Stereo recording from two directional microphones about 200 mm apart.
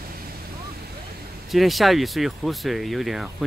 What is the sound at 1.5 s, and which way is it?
Speech, centre (ahead or behind).